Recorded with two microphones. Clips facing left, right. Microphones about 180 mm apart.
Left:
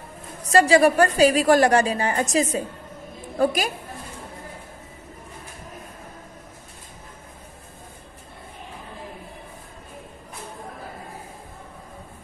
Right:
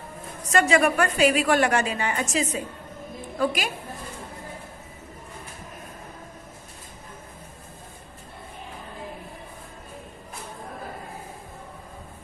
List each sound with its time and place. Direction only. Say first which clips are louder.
0.5 s a woman's voice: left 4 dB; 35° left (ahead or behind)